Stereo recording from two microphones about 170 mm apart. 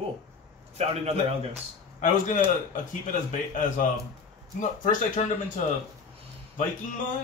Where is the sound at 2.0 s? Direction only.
50° left (ahead or behind).